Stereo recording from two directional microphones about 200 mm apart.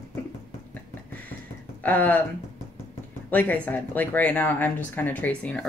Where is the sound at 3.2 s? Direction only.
10° left (ahead or behind).